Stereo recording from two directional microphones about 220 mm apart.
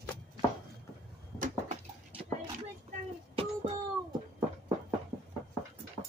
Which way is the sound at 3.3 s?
25° right (ahead or behind).